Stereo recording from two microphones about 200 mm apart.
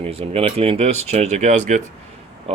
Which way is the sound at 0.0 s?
30° right (ahead or behind).